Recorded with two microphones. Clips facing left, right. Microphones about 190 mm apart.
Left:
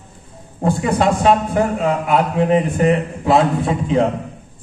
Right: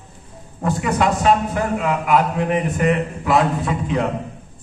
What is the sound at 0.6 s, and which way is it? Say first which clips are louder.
A man's voice: left 3 dB; 30° left (ahead or behind).